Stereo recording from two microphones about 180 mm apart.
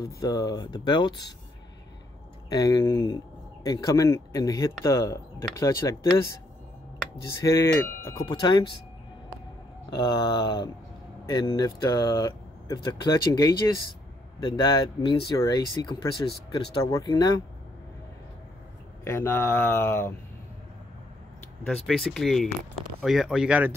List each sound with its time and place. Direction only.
0.0 s speech: 20° left (ahead or behind)
2.5 s speech: 20° left (ahead or behind)
7.4 s speech: 15° left (ahead or behind)
9.8 s speech: 25° left (ahead or behind)
19.0 s speech: 15° left (ahead or behind)
21.6 s speech: 5° left (ahead or behind)